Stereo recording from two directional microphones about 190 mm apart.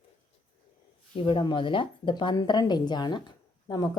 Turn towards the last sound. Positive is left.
turn(degrees=20)  # may be behind; listen again after turning